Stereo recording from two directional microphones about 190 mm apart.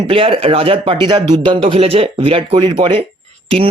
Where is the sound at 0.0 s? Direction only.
30° right (ahead or behind).